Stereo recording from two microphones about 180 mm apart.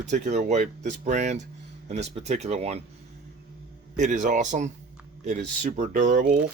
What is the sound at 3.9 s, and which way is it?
Speech, 40° right (ahead or behind).